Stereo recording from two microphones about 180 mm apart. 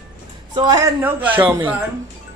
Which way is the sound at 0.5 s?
20° right (ahead or behind).